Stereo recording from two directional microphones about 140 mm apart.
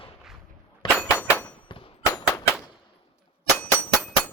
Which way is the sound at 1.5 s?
35° left (ahead or behind).